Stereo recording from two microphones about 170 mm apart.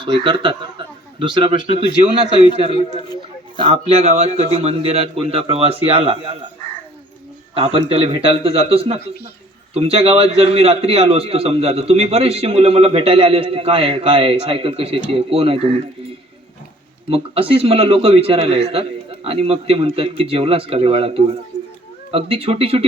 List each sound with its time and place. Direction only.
0.0 s a man's voice: 30° right (ahead or behind)
7.5 s a man's voice: 35° right (ahead or behind)
17.1 s a man's voice: 35° right (ahead or behind)